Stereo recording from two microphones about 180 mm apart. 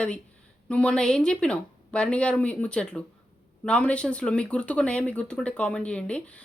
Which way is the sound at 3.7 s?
5° left (ahead or behind).